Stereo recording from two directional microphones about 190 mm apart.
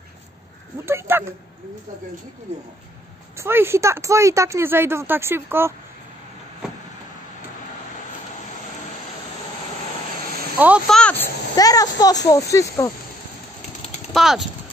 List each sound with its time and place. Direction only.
0.8 s speech: 10° right (ahead or behind)
3.3 s speech: 10° right (ahead or behind)
10.6 s speech: 5° right (ahead or behind)
11.0 s speech: 5° left (ahead or behind)
11.5 s a child's voice: 20° left (ahead or behind)
14.1 s speech: centre (ahead or behind)